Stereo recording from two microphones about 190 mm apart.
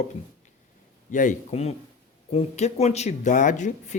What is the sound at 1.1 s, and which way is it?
Speech, 45° left (ahead or behind).